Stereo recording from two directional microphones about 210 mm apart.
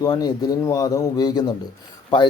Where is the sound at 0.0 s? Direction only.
20° left (ahead or behind).